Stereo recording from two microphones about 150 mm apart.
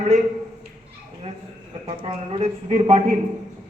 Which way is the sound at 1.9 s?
35° right (ahead or behind).